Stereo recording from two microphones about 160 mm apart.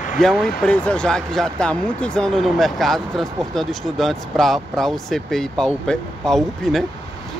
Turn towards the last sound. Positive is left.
turn(degrees=0)  # may be behind; listen again after turning